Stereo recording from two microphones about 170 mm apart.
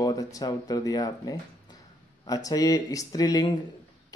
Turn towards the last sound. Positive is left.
turn(degrees=25)  # may be behind; listen again after turning